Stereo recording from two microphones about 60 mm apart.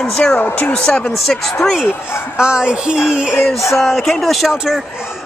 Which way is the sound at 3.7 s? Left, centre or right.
Centre.